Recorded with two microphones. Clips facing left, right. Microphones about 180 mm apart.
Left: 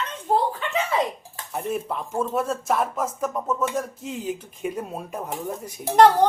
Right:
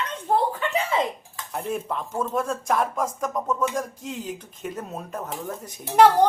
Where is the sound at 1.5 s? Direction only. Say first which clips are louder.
Left 1 dB; 5° left (ahead or behind).